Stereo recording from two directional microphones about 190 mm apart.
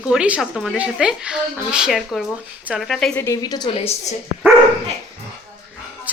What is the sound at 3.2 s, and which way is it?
Speech, 20° left (ahead or behind).